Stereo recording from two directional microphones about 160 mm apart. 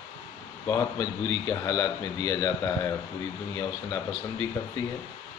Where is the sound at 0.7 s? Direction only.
20° left (ahead or behind).